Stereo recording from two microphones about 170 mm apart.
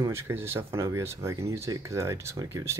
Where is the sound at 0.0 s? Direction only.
15° right (ahead or behind).